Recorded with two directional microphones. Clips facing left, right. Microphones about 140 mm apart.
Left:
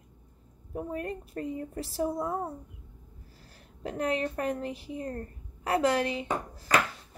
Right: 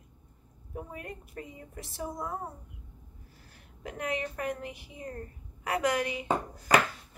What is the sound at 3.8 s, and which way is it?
A woman's voice, 35° left (ahead or behind).